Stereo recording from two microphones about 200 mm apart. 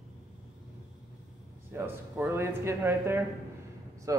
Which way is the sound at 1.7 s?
10° right (ahead or behind).